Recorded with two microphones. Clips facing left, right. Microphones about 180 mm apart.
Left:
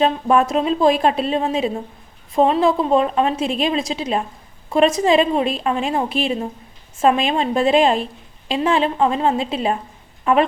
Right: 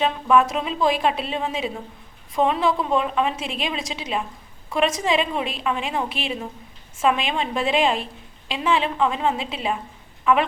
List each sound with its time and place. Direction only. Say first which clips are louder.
0.0 s a woman's voice: left 3 dB; 40° left (ahead or behind)